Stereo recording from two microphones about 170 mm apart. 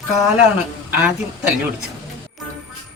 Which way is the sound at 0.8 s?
10° right (ahead or behind).